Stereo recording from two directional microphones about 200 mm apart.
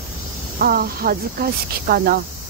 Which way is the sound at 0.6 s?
50° right (ahead or behind).